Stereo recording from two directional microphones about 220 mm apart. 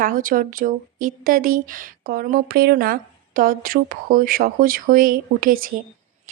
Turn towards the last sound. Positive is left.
turn(degrees=-40)  # may be behind; listen again after turning